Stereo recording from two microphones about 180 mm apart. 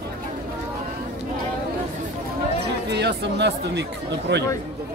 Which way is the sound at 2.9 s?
70° right (ahead or behind).